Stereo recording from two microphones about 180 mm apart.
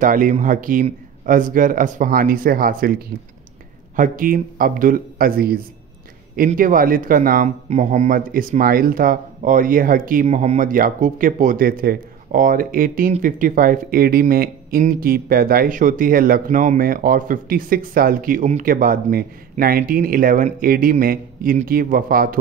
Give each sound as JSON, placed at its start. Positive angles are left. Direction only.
{"t": 0.0, "sound": "speech", "side_deg": -50}
{"t": 10.2, "sound": "speech", "side_deg": -40}